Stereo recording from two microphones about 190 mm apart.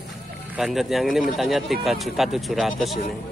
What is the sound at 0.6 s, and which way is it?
Speech, centre (ahead or behind).